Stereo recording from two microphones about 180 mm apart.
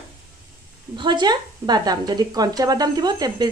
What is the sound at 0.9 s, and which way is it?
Speech, 25° right (ahead or behind).